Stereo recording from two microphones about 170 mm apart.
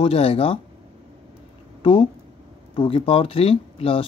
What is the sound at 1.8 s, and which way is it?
Speech, 30° left (ahead or behind).